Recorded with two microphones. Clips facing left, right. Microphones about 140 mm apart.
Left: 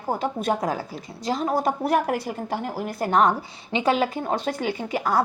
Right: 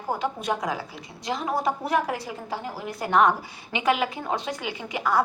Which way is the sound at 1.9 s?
55° left (ahead or behind).